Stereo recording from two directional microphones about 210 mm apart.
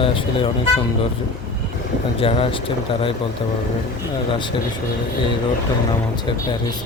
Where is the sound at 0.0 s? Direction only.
25° left (ahead or behind).